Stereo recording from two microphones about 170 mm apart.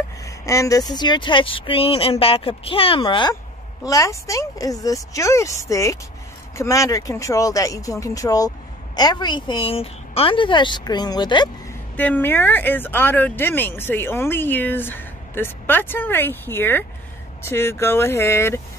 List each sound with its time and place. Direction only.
0.2 s a sound: 20° left (ahead or behind)
0.9 s a woman's voice: 25° left (ahead or behind)
12.0 s speech: 10° left (ahead or behind)